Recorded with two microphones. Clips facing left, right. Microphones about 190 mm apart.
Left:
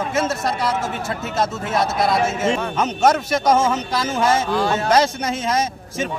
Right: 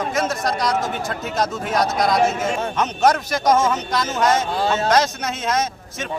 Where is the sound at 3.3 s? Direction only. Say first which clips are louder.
Left 1 dB; 25° left (ahead or behind).